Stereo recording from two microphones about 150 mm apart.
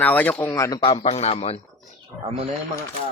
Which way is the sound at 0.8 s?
40° left (ahead or behind).